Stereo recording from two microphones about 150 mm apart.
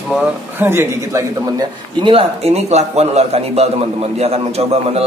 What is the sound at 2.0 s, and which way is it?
A man's voice, 40° right (ahead or behind).